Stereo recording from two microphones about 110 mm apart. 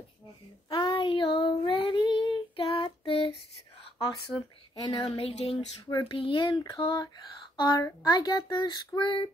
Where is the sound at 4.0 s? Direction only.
45° left (ahead or behind).